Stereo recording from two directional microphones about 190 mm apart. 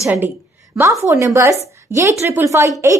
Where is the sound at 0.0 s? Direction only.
10° right (ahead or behind).